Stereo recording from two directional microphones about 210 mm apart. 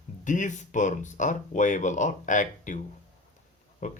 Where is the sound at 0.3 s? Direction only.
35° left (ahead or behind).